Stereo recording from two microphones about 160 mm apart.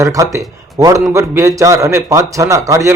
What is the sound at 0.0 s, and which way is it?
A man's voice, 20° right (ahead or behind).